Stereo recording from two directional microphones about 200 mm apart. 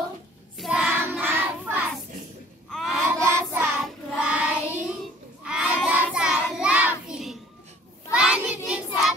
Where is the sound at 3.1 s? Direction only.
10° right (ahead or behind).